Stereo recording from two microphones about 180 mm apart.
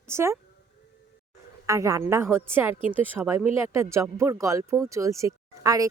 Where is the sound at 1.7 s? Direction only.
15° right (ahead or behind).